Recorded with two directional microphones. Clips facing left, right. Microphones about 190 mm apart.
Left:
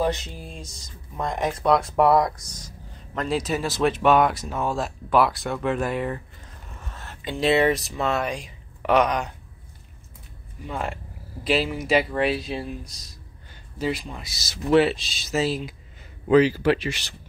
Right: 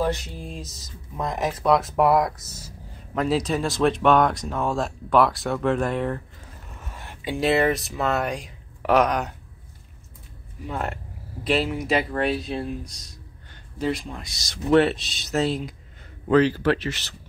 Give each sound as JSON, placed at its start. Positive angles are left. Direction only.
{"t": 0.0, "sound": "speech", "side_deg": 20}
{"t": 0.4, "sound": "speech", "side_deg": 0}
{"t": 6.9, "sound": "a sound", "side_deg": -10}
{"t": 7.3, "sound": "speech", "side_deg": 0}
{"t": 10.7, "sound": "speech", "side_deg": 0}